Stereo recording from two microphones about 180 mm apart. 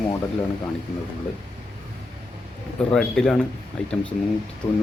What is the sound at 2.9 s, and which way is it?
Speech, 5° left (ahead or behind).